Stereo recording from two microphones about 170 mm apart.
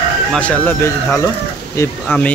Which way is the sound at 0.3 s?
10° left (ahead or behind).